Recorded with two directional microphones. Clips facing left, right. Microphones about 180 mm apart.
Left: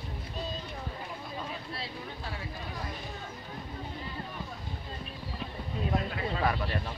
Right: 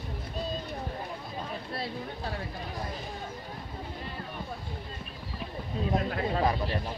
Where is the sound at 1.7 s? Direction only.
50° right (ahead or behind).